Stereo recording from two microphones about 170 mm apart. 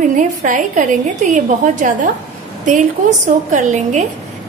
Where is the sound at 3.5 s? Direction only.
45° right (ahead or behind).